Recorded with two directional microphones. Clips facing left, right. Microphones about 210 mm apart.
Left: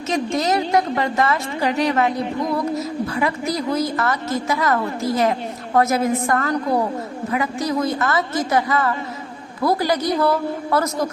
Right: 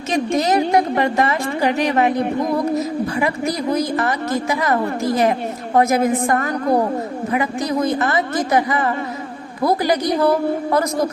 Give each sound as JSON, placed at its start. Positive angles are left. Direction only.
{"t": 0.1, "sound": "a woman's voice", "side_deg": -15}